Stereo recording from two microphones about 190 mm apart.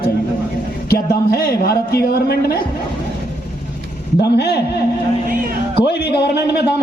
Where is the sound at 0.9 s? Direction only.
55° left (ahead or behind).